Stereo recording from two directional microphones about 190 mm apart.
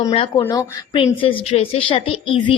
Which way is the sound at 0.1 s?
30° left (ahead or behind).